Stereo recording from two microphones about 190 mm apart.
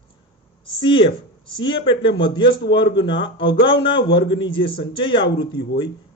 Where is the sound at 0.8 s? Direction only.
30° left (ahead or behind).